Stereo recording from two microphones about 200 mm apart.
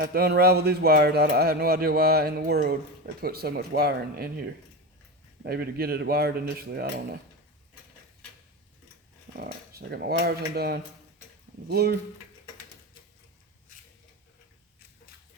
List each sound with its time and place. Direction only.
0.0 s speech: 50° right (ahead or behind)
9.4 s speech: 50° right (ahead or behind)